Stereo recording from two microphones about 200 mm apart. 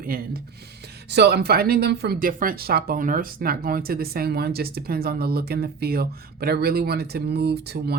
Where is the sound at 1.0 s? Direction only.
55° right (ahead or behind).